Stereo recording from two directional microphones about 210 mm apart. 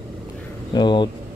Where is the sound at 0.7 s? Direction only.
20° left (ahead or behind).